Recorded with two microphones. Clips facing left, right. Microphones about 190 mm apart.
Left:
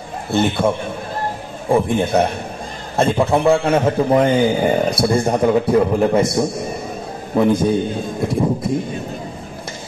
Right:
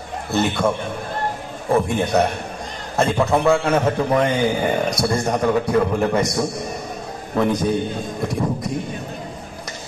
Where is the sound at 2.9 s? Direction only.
30° left (ahead or behind).